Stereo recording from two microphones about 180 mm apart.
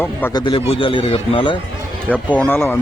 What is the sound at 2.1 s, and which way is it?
Speech, 10° left (ahead or behind).